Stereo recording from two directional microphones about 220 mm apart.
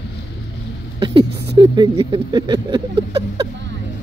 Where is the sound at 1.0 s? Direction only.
20° right (ahead or behind).